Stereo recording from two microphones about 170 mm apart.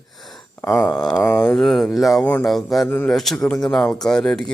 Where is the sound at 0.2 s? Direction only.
Centre (ahead or behind).